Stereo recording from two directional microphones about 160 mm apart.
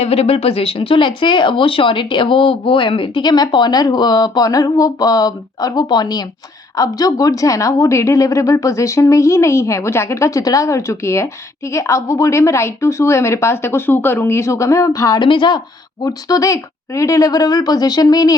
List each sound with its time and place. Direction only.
0.0 s a woman's voice: 40° left (ahead or behind); by 18.3 s 25° left (ahead or behind)